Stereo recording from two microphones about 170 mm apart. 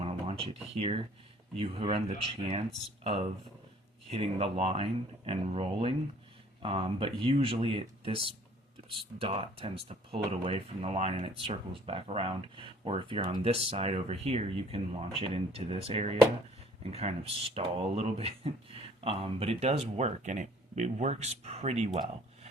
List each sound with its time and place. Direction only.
0.0 s a sound: 35° right (ahead or behind)
1.5 s speech: 35° right (ahead or behind)
4.1 s speech: 35° right (ahead or behind)